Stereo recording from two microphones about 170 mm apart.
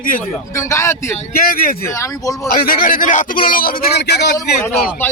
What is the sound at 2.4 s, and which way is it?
A man's voice, 60° left (ahead or behind).